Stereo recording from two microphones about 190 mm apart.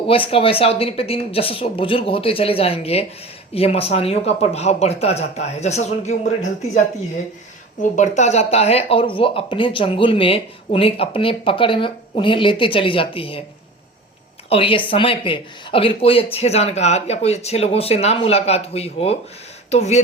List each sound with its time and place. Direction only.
0.1 s speech: 30° left (ahead or behind)
7.8 s speech: 40° left (ahead or behind)
14.5 s speech: 25° left (ahead or behind)